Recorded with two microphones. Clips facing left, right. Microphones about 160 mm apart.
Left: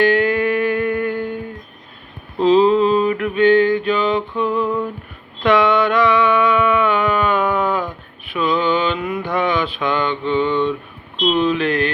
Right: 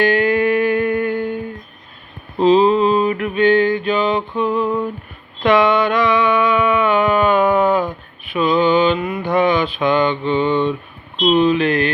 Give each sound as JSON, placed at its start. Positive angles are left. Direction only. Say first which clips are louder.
{"t": 0.1, "sound": "music", "louder": "right 1 dB", "side_deg": -10}
{"t": 2.4, "sound": "a sound", "louder": "even", "side_deg": -10}
{"t": 8.3, "sound": "mantra", "louder": "right 3 dB", "side_deg": -10}
{"t": 11.2, "sound": "speech", "louder": "right 3 dB", "side_deg": -10}